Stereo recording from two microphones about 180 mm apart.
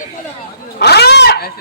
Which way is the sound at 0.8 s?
65° left (ahead or behind).